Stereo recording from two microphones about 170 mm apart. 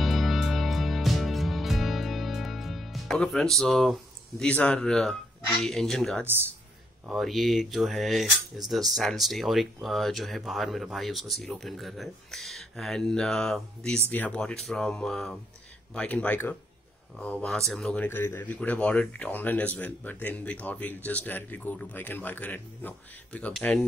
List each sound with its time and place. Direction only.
0.0 s music: centre (ahead or behind)
5.6 s speech: centre (ahead or behind)
6.2 s a man's voice: 10° right (ahead or behind)
7.1 s speech: centre (ahead or behind)